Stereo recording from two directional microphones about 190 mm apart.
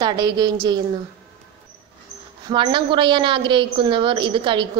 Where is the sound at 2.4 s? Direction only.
25° right (ahead or behind).